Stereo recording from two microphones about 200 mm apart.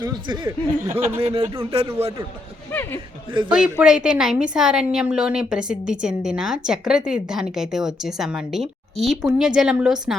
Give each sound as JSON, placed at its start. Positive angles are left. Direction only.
{"t": 0.0, "sound": "speech", "side_deg": -20}
{"t": 0.9, "sound": "speech", "side_deg": -10}
{"t": 1.2, "sound": "speech", "side_deg": -30}
{"t": 2.7, "sound": "speech", "side_deg": 10}
{"t": 3.5, "sound": "a woman's voice", "side_deg": -5}